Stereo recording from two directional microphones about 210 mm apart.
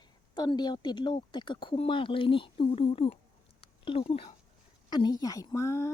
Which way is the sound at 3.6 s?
25° left (ahead or behind).